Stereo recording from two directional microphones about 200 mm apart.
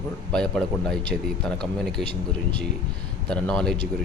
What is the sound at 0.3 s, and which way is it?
Speech, 5° left (ahead or behind).